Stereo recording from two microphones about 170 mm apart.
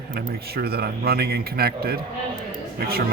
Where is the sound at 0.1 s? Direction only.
65° right (ahead or behind).